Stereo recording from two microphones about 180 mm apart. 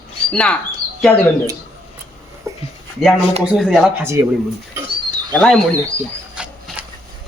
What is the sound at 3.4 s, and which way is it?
Speech, centre (ahead or behind).